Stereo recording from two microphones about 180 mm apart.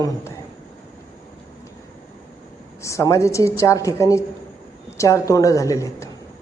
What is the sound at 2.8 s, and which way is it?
Speech, 15° left (ahead or behind).